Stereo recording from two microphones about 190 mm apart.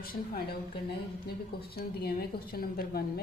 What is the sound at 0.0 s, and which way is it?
Speech, 50° left (ahead or behind).